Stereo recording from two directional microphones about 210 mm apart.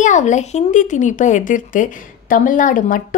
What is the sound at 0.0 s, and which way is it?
A woman's voice, 35° left (ahead or behind).